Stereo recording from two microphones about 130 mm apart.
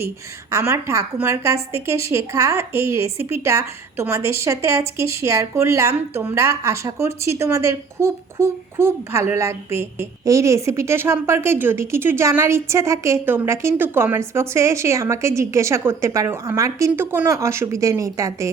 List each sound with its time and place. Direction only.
0.5 s a child's voice: 20° right (ahead or behind)